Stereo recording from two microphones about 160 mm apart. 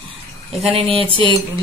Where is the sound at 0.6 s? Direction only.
35° right (ahead or behind).